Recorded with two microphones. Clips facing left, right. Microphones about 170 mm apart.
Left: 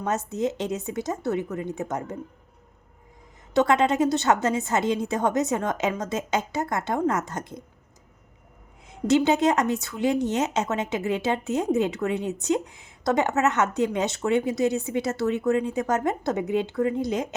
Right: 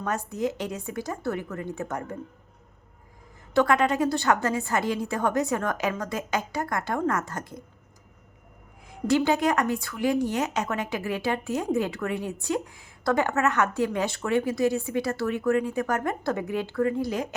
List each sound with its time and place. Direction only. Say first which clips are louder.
0.0 s speech: left 2 dB; 20° left (ahead or behind)
3.5 s speech: left 1 dB; 20° left (ahead or behind)
8.9 s speech: left 2 dB; 20° left (ahead or behind)